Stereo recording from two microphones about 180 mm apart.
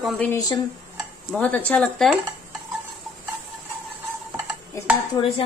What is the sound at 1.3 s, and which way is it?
Speech, 10° left (ahead or behind).